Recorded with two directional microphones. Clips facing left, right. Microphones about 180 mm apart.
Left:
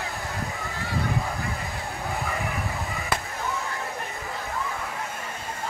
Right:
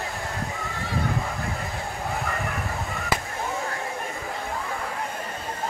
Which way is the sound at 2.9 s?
Centre (ahead or behind).